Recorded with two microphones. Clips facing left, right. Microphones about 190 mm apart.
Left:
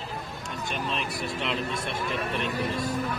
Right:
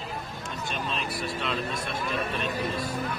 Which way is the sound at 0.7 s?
20° left (ahead or behind).